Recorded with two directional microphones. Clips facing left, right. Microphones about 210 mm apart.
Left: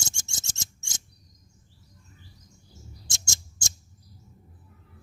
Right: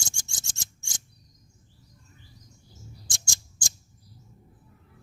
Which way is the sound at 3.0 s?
25° left (ahead or behind).